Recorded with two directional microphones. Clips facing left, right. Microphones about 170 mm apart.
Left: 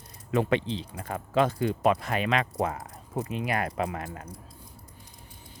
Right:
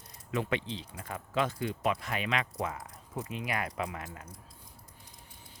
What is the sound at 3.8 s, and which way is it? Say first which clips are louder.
Speech: left 6 dB; 55° left (ahead or behind).